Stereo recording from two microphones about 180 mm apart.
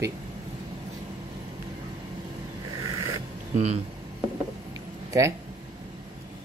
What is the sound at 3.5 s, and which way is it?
Speech, 35° right (ahead or behind).